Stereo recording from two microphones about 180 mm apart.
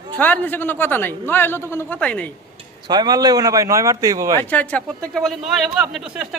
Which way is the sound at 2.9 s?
20° right (ahead or behind).